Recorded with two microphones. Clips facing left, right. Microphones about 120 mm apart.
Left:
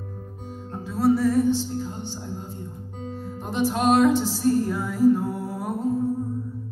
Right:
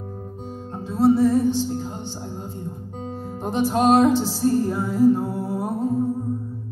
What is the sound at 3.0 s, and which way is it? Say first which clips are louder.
Music: right 3 dB; 35° right (ahead or behind).